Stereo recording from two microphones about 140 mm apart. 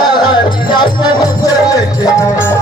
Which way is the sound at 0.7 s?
30° left (ahead or behind).